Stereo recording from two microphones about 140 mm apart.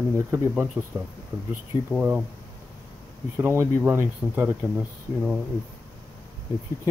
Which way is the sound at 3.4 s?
20° right (ahead or behind).